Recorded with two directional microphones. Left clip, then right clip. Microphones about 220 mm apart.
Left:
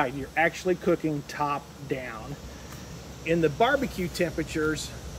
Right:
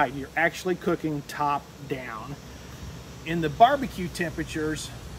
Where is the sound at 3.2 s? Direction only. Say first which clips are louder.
Right 3 dB; 20° right (ahead or behind).